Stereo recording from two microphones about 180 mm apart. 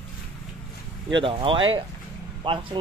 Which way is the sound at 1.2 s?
30° right (ahead or behind).